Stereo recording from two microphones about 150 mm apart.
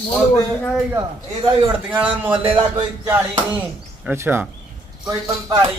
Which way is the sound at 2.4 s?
40° right (ahead or behind).